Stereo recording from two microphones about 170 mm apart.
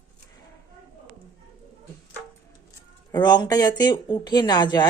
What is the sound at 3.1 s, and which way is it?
Speech, 25° left (ahead or behind).